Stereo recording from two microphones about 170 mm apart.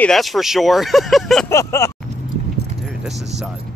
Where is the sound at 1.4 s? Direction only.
15° left (ahead or behind).